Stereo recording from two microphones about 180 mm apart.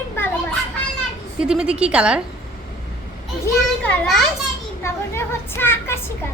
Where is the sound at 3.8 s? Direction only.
5° left (ahead or behind).